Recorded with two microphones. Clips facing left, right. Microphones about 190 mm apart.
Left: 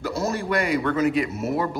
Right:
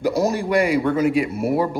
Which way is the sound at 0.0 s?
15° right (ahead or behind).